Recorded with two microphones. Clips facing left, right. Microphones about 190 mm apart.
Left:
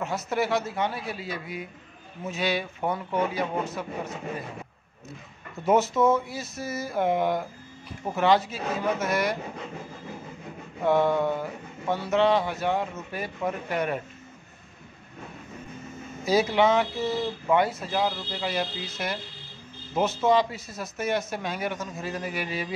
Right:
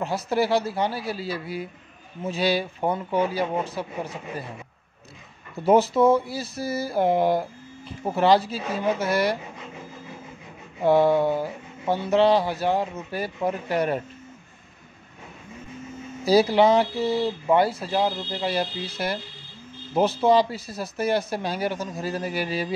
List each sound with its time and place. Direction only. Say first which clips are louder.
0.0 s speech: right 4 dB; 30° right (ahead or behind)
5.7 s speech: right 4 dB; 30° right (ahead or behind)
10.8 s speech: right 4 dB; 35° right (ahead or behind)
16.3 s speech: right 4 dB; 35° right (ahead or behind)